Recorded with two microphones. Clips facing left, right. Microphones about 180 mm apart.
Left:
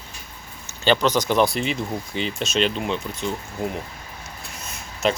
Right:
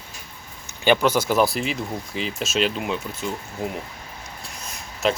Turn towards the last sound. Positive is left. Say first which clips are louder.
# even
turn(degrees=0)  # may be behind; listen again after turning